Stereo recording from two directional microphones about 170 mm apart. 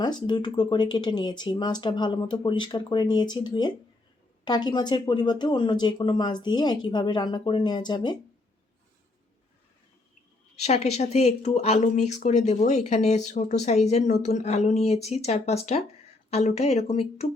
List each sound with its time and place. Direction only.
0.0 s speech: 25° left (ahead or behind)
10.6 s speech: 40° left (ahead or behind)